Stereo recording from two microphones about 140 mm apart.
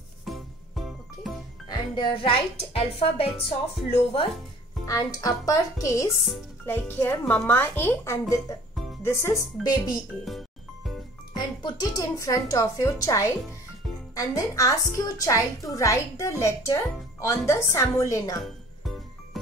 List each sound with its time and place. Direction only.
0.2 s music: centre (ahead or behind)
1.7 s a woman's voice: 35° left (ahead or behind)
4.8 s a woman's voice: 25° left (ahead or behind)
9.6 s speech: 30° left (ahead or behind)
10.2 s music: centre (ahead or behind)
11.3 s a woman's voice: 30° left (ahead or behind)